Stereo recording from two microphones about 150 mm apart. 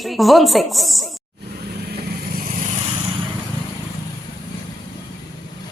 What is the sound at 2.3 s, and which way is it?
Vehicle, 70° right (ahead or behind).